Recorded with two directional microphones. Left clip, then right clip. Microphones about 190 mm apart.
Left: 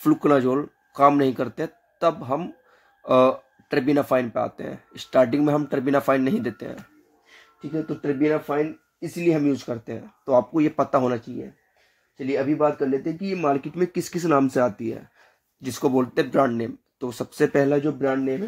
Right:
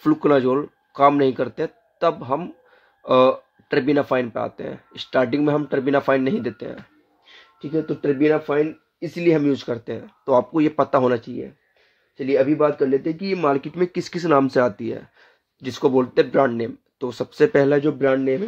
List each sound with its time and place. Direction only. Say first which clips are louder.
0.0 s speech: right 2 dB; centre (ahead or behind)
7.7 s speech: right 5 dB; 25° right (ahead or behind)
12.3 s speech: right 4 dB; 20° right (ahead or behind)
17.7 s speech: right 4 dB; 25° right (ahead or behind)